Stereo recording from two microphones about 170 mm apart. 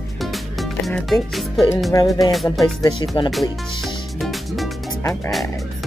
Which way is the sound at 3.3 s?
Centre (ahead or behind).